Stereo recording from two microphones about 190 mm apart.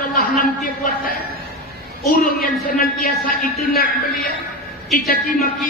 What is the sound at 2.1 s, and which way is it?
A woman's voice, 45° left (ahead or behind).